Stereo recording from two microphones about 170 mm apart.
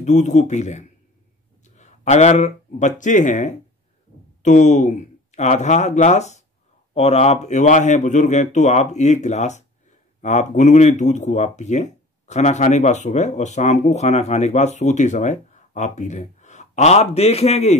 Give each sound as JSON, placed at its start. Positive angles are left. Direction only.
{"t": 0.0, "sound": "speech", "side_deg": 45}